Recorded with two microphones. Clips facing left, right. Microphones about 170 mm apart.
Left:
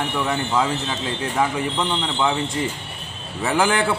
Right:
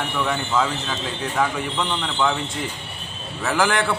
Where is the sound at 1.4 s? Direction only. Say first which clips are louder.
Left 1 dB; 15° left (ahead or behind).